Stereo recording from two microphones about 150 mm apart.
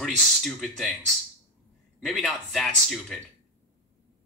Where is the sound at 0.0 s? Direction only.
Centre (ahead or behind).